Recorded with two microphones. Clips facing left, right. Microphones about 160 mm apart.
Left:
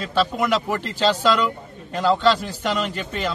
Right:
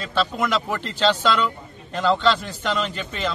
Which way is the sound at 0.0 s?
10° left (ahead or behind).